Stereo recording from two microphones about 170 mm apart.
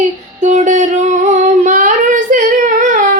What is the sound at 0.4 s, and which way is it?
Child singing, 45° right (ahead or behind).